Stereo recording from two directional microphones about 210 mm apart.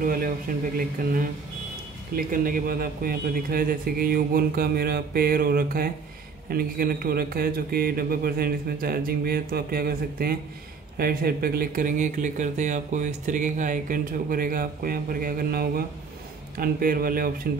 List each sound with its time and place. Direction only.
0.0 s a man's voice: 45° right (ahead or behind)